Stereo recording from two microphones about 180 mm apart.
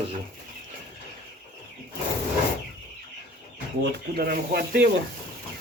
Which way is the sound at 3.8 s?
60° right (ahead or behind).